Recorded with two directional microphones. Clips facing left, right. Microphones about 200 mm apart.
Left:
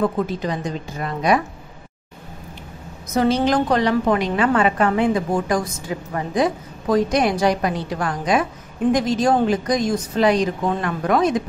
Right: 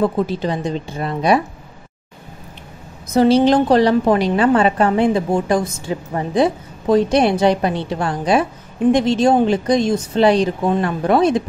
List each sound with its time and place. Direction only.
0.0 s a woman's voice: 30° right (ahead or behind)
3.2 s a woman's voice: 30° right (ahead or behind)